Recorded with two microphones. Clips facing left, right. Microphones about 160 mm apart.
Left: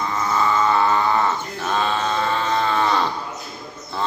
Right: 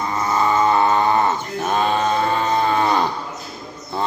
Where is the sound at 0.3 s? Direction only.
15° right (ahead or behind).